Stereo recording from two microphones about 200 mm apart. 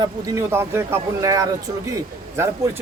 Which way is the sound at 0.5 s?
10° right (ahead or behind).